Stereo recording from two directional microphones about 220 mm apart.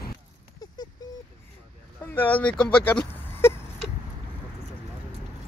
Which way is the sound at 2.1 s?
10° left (ahead or behind).